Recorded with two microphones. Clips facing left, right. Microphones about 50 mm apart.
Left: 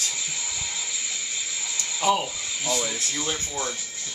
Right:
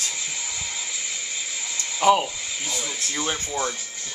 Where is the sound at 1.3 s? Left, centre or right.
Centre.